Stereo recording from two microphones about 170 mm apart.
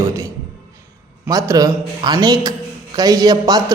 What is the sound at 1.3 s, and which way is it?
A man's voice, 20° right (ahead or behind).